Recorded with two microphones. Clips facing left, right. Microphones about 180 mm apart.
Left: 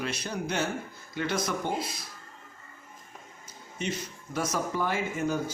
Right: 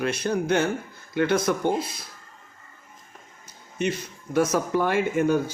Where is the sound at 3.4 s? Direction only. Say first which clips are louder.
Right 7 dB; 60° right (ahead or behind).